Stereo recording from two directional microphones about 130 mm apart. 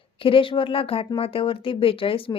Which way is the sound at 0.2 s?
45° left (ahead or behind).